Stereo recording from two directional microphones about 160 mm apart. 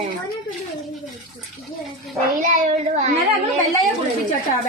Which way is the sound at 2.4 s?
50° right (ahead or behind).